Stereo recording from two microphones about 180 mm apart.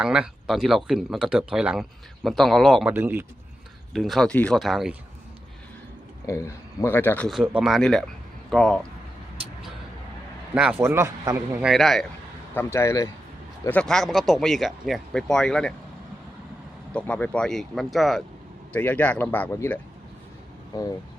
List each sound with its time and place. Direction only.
0.0 s speech: 5° right (ahead or behind)
2.9 s a man's voice: 10° right (ahead or behind)
3.9 s speech: centre (ahead or behind)
6.2 s speech: 15° left (ahead or behind)
7.3 s speech: 5° right (ahead or behind)
10.5 s a man's voice: 5° right (ahead or behind)
11.7 s speech: centre (ahead or behind)
12.5 s speech: 15° left (ahead or behind)
13.7 s speech: 5° left (ahead or behind)
16.9 s speech: 5° left (ahead or behind)